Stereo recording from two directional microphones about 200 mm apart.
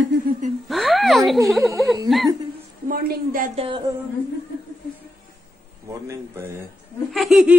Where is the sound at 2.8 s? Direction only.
45° right (ahead or behind).